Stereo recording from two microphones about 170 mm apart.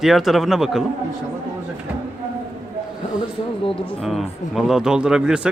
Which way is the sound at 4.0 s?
Centre (ahead or behind).